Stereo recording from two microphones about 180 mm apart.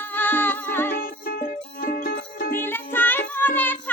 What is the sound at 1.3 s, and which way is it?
Music, 50° left (ahead or behind).